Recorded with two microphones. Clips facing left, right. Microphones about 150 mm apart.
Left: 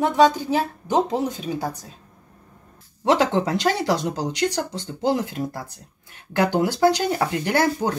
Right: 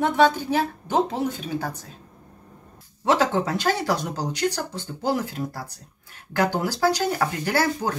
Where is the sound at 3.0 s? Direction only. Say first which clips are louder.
Left 2 dB; 20° left (ahead or behind).